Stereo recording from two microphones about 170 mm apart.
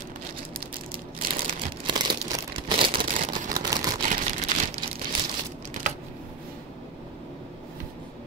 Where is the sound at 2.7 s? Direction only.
30° right (ahead or behind).